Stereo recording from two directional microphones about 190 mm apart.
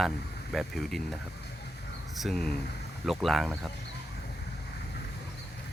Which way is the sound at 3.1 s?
Centre (ahead or behind).